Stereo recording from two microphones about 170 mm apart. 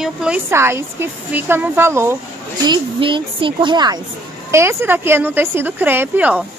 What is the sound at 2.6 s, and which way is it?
A woman's voice, 25° right (ahead or behind).